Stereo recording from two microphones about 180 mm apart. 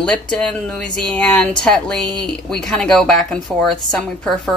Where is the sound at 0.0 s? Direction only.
5° left (ahead or behind).